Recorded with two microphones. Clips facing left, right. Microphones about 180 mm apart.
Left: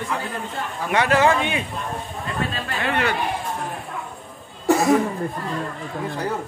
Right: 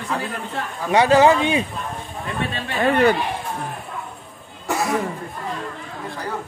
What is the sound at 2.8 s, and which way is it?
Speech, 40° right (ahead or behind).